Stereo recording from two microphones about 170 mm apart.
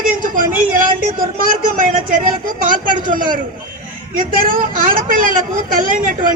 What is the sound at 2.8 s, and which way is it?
A woman's voice, 55° right (ahead or behind).